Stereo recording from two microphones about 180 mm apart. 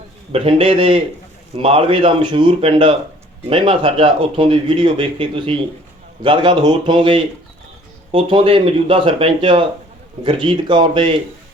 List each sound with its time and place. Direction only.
0.3 s a man's voice: 30° right (ahead or behind)